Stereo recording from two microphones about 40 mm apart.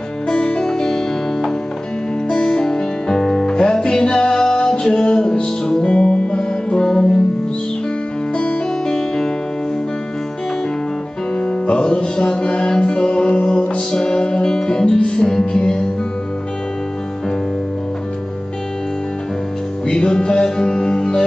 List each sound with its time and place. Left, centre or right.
0.3 s music: centre
8.8 s music: centre
11.3 s music: left
19.9 s music: left